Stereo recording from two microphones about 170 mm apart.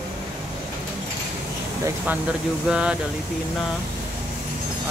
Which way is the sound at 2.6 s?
5° right (ahead or behind).